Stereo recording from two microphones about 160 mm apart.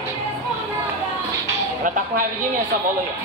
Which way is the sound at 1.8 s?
55° right (ahead or behind).